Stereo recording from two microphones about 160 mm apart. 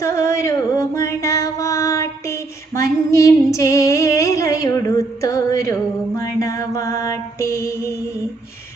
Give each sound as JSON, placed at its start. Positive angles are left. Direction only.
{"t": 0.0, "sound": "music", "side_deg": 20}